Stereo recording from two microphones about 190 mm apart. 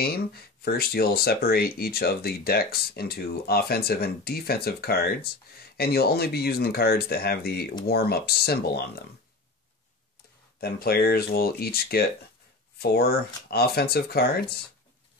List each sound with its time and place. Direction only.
0.0 s speech: 55° left (ahead or behind)
10.6 s speech: 55° left (ahead or behind)